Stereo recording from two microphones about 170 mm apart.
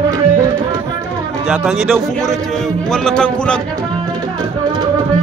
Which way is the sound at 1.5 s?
Centre (ahead or behind).